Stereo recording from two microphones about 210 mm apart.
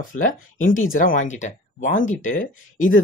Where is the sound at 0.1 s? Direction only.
40° left (ahead or behind).